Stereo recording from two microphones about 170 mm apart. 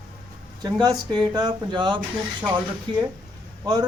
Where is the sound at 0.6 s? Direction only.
25° right (ahead or behind).